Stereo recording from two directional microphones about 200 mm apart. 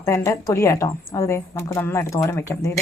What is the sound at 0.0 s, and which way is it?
Speech, 15° left (ahead or behind).